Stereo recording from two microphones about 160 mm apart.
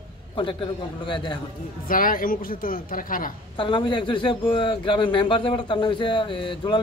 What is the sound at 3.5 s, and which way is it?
A man's voice, 30° left (ahead or behind).